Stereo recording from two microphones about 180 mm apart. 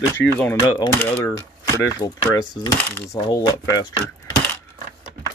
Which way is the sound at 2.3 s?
25° left (ahead or behind).